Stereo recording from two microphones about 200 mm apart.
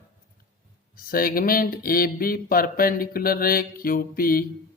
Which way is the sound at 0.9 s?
45° left (ahead or behind).